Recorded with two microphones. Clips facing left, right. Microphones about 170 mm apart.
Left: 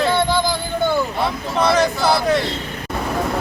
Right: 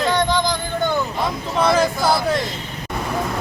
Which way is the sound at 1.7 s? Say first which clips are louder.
Left 1 dB; 10° right (ahead or behind).